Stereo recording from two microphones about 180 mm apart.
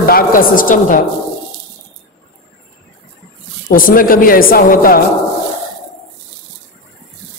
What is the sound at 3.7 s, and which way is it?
A woman's voice, 50° left (ahead or behind).